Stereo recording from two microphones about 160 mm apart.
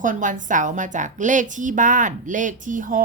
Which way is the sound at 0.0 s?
55° right (ahead or behind).